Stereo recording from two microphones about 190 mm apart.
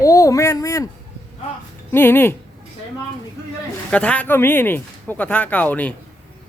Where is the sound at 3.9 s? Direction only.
5° left (ahead or behind).